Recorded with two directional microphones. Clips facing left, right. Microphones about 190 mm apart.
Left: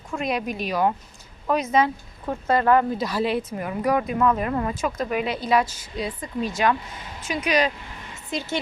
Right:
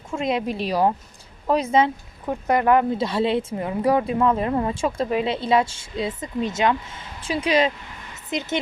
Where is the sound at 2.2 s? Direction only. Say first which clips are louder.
Right 1 dB; 15° right (ahead or behind).